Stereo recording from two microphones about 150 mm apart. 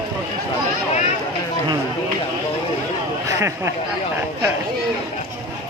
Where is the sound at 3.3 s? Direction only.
20° right (ahead or behind).